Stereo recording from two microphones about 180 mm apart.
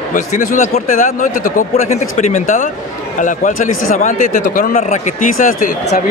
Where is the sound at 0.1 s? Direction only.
45° left (ahead or behind).